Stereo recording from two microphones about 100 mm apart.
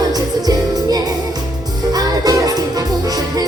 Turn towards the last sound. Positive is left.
turn(degrees=-40)  # may be behind; listen again after turning